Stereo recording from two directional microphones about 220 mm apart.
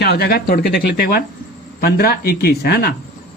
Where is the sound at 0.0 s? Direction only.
45° left (ahead or behind).